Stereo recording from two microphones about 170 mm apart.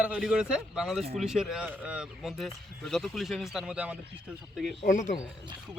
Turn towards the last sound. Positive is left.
turn(degrees=50)  # may be behind; listen again after turning